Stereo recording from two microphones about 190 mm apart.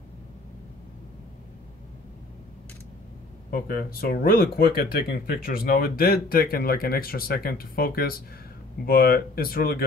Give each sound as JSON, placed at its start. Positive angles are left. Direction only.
{"t": 3.4, "sound": "speech", "side_deg": 50}